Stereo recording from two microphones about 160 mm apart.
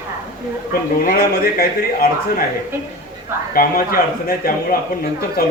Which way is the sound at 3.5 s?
65° left (ahead or behind).